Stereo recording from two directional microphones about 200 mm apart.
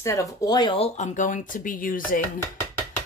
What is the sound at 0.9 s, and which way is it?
Speech, 40° left (ahead or behind).